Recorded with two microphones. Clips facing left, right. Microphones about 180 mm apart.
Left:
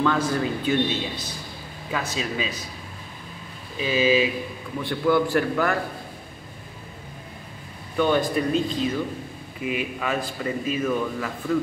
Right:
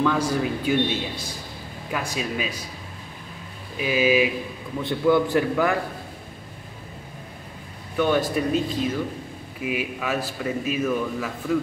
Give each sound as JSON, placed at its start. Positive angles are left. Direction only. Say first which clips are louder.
{"t": 0.0, "sound": "a man's voice", "louder": "even", "side_deg": -10}
{"t": 3.7, "sound": "a man's voice", "louder": "even", "side_deg": -10}
{"t": 8.0, "sound": "a man's voice", "louder": "even", "side_deg": -5}